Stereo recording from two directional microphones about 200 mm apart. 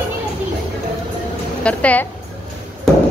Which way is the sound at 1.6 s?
5° left (ahead or behind).